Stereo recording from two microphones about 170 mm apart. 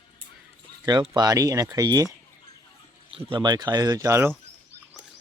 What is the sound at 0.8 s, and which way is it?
Speech, 25° right (ahead or behind).